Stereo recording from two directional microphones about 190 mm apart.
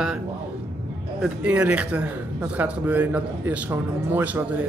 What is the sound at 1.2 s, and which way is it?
A man's voice, 5° right (ahead or behind).